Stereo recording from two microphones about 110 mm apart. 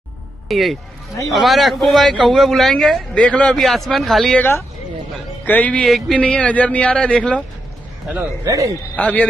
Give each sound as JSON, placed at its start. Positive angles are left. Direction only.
{"t": 0.5, "sound": "a man's voice", "side_deg": 0}
{"t": 4.4, "sound": "speech", "side_deg": 25}
{"t": 5.9, "sound": "a man's voice", "side_deg": 0}
{"t": 8.5, "sound": "a man's voice", "side_deg": -30}
{"t": 8.9, "sound": "speech", "side_deg": 15}